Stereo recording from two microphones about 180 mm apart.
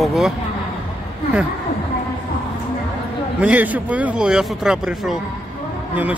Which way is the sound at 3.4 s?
10° right (ahead or behind).